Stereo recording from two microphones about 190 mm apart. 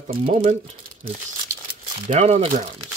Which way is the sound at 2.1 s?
40° right (ahead or behind).